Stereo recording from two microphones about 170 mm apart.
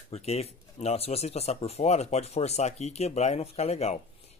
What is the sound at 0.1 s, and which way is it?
Speech, 40° left (ahead or behind).